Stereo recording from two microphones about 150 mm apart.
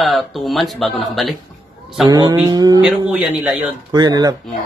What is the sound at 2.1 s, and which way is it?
Speech, 25° right (ahead or behind).